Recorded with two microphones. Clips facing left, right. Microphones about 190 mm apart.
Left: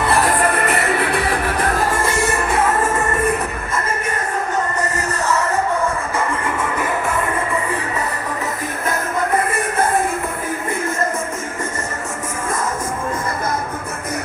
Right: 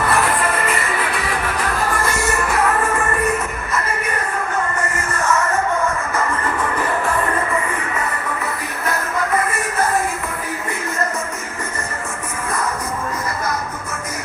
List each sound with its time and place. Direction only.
0.5 s music: 65° left (ahead or behind)
1.9 s music: 25° left (ahead or behind)
4.8 s music: 40° left (ahead or behind)
9.5 s music: 55° left (ahead or behind)